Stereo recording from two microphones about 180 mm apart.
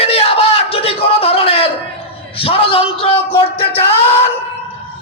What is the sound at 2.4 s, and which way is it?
Speech, 30° left (ahead or behind).